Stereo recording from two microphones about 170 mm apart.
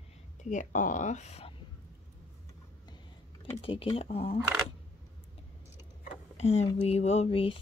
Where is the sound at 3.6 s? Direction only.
35° left (ahead or behind).